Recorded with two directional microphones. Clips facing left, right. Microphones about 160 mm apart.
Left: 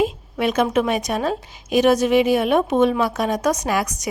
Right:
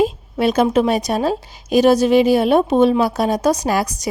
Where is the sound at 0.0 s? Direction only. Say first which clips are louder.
Right 4 dB; 35° right (ahead or behind).